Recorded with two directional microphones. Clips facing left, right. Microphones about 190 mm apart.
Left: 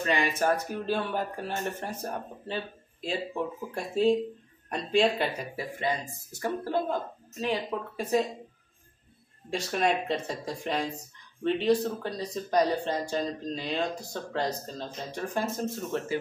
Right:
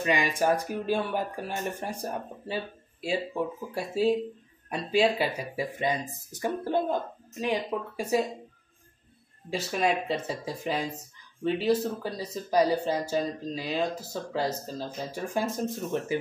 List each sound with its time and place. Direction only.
0.0 s speech: 15° right (ahead or behind)
5.8 s speech: 20° right (ahead or behind)
9.5 s speech: centre (ahead or behind)